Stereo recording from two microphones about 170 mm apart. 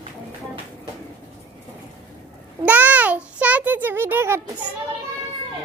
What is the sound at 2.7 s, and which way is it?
A child's voice, 10° right (ahead or behind).